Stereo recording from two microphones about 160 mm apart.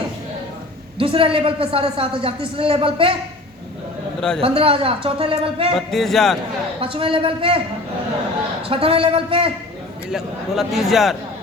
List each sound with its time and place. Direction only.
0.9 s a woman's voice: 35° right (ahead or behind)
4.4 s a woman's voice: 35° right (ahead or behind)
5.7 s a man's voice: centre (ahead or behind)
6.7 s a woman's voice: 35° right (ahead or behind)
8.6 s a woman's voice: 35° right (ahead or behind)
10.1 s a man's voice: 5° right (ahead or behind)